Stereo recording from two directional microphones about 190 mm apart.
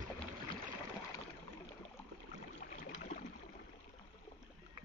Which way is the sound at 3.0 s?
40° left (ahead or behind).